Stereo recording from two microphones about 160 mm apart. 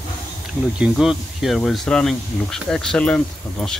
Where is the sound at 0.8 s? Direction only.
5° right (ahead or behind).